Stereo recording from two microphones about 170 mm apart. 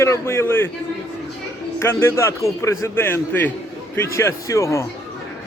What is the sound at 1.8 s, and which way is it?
A man's voice, 15° left (ahead or behind).